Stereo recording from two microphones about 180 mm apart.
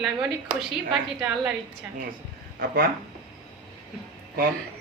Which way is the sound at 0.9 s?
5° right (ahead or behind).